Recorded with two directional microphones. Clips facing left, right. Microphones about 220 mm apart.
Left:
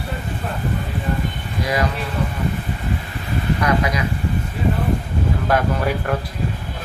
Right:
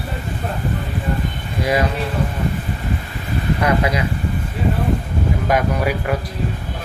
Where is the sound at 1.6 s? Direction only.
25° right (ahead or behind).